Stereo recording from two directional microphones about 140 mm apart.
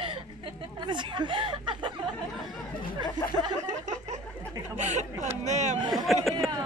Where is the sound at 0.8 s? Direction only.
35° right (ahead or behind).